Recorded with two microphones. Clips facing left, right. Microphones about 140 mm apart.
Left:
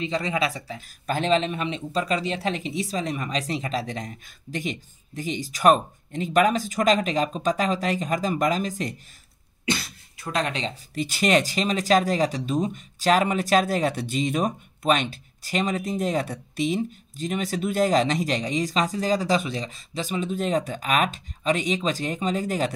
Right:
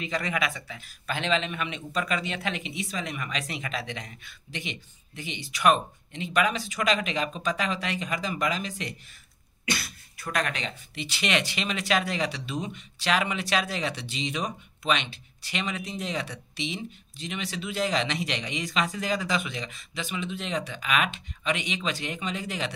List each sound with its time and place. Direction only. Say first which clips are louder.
0.0 s speech: left 4 dB; 25° left (ahead or behind); by 8.9 s 40° left (ahead or behind)
9.7 s speech: left 5 dB; 25° left (ahead or behind)
11.0 s speech: left 7 dB; 45° left (ahead or behind)